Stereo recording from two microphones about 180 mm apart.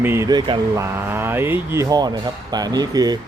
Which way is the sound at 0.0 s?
15° right (ahead or behind).